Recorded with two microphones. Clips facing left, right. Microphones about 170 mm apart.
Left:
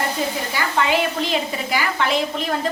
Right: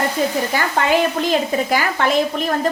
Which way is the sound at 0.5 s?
50° right (ahead or behind).